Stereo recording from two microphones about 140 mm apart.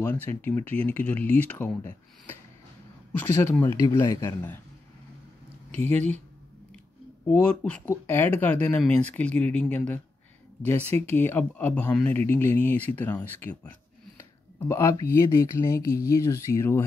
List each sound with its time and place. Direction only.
0.0 s speech: 15° left (ahead or behind)
5.7 s speech: 15° left (ahead or behind)
7.2 s speech: 10° left (ahead or behind)
14.7 s speech: 20° left (ahead or behind)